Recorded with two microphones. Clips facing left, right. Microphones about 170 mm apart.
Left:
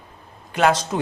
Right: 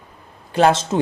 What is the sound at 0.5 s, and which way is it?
Speech, 30° right (ahead or behind).